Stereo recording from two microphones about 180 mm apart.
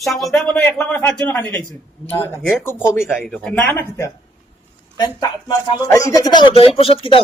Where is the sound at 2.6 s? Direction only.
15° left (ahead or behind); by 7.2 s 30° left (ahead or behind).